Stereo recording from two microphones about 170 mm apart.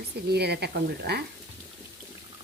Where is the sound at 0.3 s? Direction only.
70° right (ahead or behind).